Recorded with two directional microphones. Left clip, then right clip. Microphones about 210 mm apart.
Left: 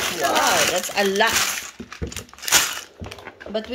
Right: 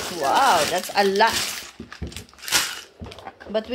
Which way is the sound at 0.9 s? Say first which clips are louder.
Right 3 dB; 5° right (ahead or behind).